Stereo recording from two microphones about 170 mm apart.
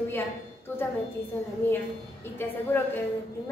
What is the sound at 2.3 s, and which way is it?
Speech, 15° left (ahead or behind).